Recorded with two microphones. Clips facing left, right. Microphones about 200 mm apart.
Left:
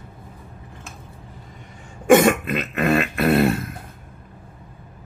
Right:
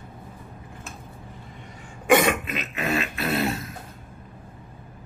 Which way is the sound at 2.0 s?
45° left (ahead or behind).